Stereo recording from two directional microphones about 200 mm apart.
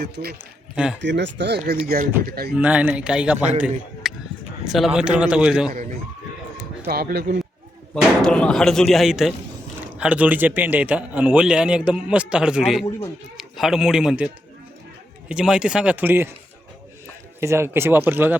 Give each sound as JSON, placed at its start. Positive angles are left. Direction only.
{"t": 0.0, "sound": "speech", "side_deg": -50}
{"t": 2.6, "sound": "speech", "side_deg": -5}
{"t": 4.0, "sound": "a sound", "side_deg": 0}
{"t": 4.6, "sound": "a man's voice", "side_deg": 0}
{"t": 6.8, "sound": "speech", "side_deg": -50}
{"t": 8.2, "sound": "a man's voice", "side_deg": 5}
{"t": 15.3, "sound": "a man's voice", "side_deg": -5}
{"t": 17.4, "sound": "speech", "side_deg": -15}